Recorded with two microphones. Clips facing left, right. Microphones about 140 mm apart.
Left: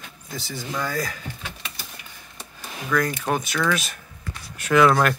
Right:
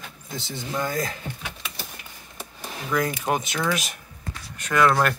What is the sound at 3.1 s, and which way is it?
Speech, 15° right (ahead or behind).